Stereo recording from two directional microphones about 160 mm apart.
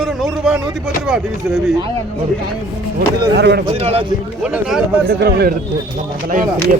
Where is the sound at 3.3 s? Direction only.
90° right.